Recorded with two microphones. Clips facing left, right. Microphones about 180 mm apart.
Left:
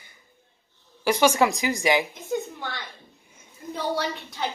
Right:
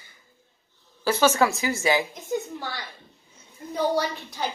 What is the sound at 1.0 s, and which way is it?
Speech, 15° left (ahead or behind).